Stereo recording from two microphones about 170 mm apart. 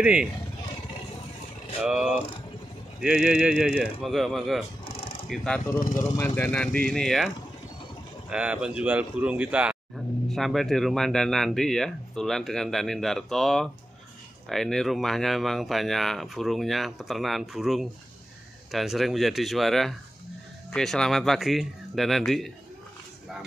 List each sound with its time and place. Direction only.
0.0 s speech: 5° right (ahead or behind)
1.8 s speech: 5° right (ahead or behind)
5.8 s speech: 55° left (ahead or behind)
6.1 s speech: 10° left (ahead or behind)
8.3 s speech: 5° right (ahead or behind)